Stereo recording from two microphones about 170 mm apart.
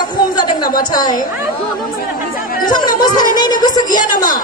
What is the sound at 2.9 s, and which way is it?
A woman's voice, 25° left (ahead or behind).